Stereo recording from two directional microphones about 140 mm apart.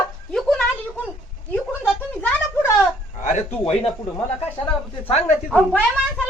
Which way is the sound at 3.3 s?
55° left (ahead or behind).